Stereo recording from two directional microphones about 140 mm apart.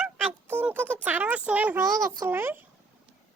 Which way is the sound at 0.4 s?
15° right (ahead or behind).